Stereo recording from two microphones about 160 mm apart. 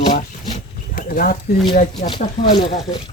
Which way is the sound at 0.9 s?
65° left (ahead or behind).